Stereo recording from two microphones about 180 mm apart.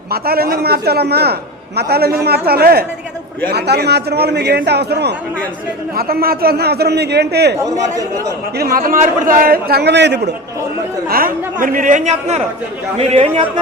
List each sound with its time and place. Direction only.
0.1 s a man's voice: 60° right (ahead or behind)
7.6 s speech: 20° right (ahead or behind)
8.5 s a man's voice: 55° right (ahead or behind); by 10.3 s 70° right (ahead or behind)
11.1 s a man's voice: 50° right (ahead or behind); by 13.5 s 35° right (ahead or behind)